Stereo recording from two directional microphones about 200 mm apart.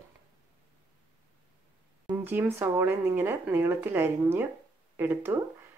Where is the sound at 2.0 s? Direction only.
10° right (ahead or behind).